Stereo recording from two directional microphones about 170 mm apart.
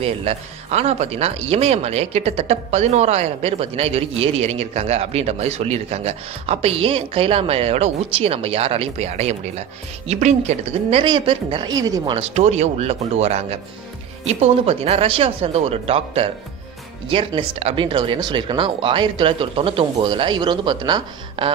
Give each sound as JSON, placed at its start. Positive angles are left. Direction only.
{"t": 0.0, "sound": "speech", "side_deg": -35}
{"t": 12.4, "sound": "speech", "side_deg": -40}